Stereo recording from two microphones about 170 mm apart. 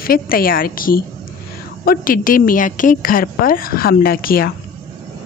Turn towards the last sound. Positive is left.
turn(degrees=60)  # may be behind; listen again after turning